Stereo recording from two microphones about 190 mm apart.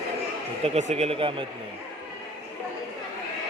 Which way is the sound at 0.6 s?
35° right (ahead or behind).